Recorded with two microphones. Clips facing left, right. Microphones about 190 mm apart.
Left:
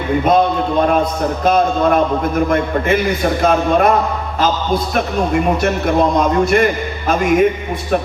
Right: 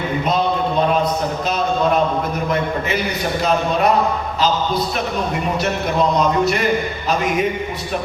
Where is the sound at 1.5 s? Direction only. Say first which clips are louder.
Left 6 dB; 50° left (ahead or behind).